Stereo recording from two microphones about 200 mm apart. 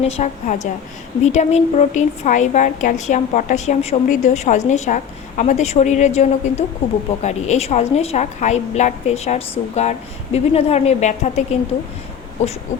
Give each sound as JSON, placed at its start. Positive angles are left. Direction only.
{"t": 0.0, "sound": "a woman's voice", "side_deg": 35}